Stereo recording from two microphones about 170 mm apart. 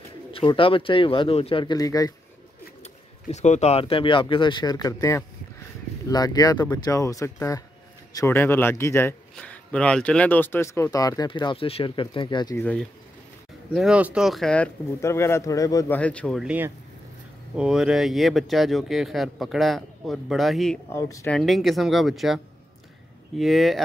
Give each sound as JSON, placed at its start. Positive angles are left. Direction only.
{"t": 0.3, "sound": "speech", "side_deg": 30}
{"t": 2.8, "sound": "a man's voice", "side_deg": 40}
{"t": 12.5, "sound": "a man's voice", "side_deg": 10}
{"t": 13.7, "sound": "speech", "side_deg": -5}
{"t": 15.0, "sound": "a man's voice", "side_deg": 15}
{"t": 16.0, "sound": "a man's voice", "side_deg": 5}
{"t": 16.4, "sound": "speech", "side_deg": -10}
{"t": 20.9, "sound": "a man's voice", "side_deg": 15}
{"t": 21.3, "sound": "speech", "side_deg": 0}